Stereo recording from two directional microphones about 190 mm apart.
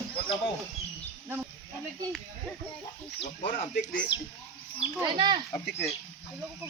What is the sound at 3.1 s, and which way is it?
Speech, 30° left (ahead or behind).